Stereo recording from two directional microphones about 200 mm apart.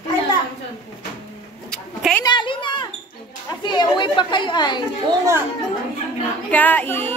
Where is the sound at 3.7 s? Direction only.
20° left (ahead or behind).